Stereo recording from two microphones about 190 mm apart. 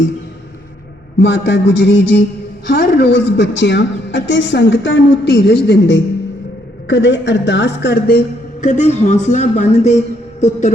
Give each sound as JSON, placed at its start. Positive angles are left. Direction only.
{"t": 1.2, "sound": "a woman's voice", "side_deg": 65}
{"t": 8.6, "sound": "speech", "side_deg": 40}